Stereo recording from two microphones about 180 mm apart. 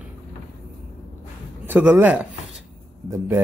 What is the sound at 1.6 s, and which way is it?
Speech, 10° right (ahead or behind).